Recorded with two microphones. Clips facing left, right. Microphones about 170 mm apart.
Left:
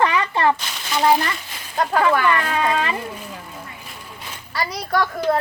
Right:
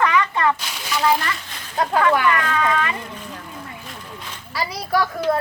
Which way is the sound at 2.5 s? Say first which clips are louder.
Even; 25° left (ahead or behind).